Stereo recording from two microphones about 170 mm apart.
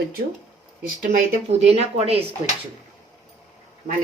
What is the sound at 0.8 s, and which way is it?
Speech, 45° right (ahead or behind).